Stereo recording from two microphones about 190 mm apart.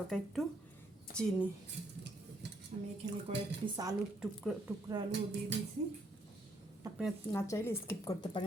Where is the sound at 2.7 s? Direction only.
40° right (ahead or behind).